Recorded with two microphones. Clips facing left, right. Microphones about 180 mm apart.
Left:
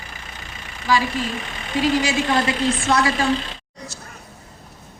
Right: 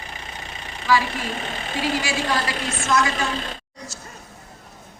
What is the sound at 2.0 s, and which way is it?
A woman's voice, 30° left (ahead or behind).